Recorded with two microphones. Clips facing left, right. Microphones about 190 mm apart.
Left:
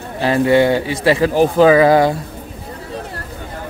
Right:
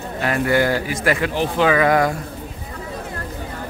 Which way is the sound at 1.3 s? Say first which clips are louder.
Left 10 dB; 40° left (ahead or behind).